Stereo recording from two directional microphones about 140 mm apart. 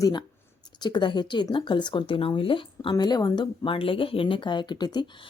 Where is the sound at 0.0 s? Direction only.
30° left (ahead or behind).